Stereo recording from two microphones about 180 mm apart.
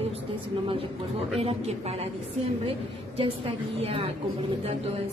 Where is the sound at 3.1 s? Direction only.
30° right (ahead or behind).